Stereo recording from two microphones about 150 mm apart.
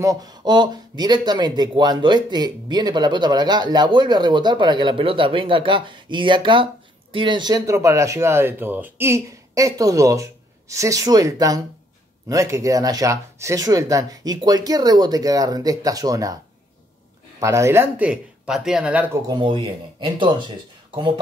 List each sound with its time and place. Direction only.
0.0 s speech: 25° right (ahead or behind)
17.4 s speech: 20° right (ahead or behind)
19.2 s speech: 30° right (ahead or behind)